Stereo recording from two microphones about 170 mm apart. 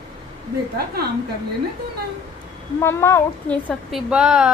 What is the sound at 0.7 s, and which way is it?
Speech, 65° right (ahead or behind).